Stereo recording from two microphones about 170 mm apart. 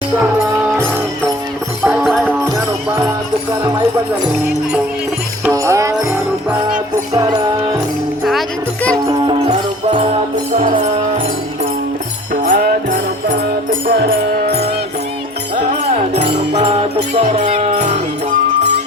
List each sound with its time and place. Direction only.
1.8 s music: 5° right (ahead or behind)
5.5 s music: 20° right (ahead or behind)
8.2 s music: centre (ahead or behind)
12.3 s music: 50° right (ahead or behind); by 14.7 s 65° right (ahead or behind)
16.5 s music: 40° right (ahead or behind)